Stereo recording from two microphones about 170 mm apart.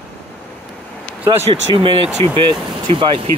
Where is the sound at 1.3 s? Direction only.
35° right (ahead or behind).